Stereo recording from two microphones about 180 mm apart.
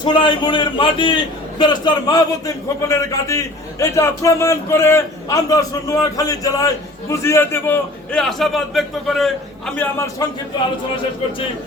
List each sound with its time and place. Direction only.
0.0 s a man's voice: 25° left (ahead or behind); by 9.9 s 5° left (ahead or behind)